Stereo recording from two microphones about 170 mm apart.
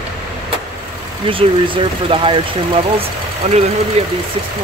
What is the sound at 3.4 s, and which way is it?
Speech, 40° right (ahead or behind).